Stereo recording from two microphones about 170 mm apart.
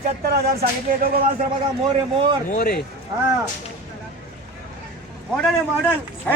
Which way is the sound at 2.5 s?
55° left (ahead or behind).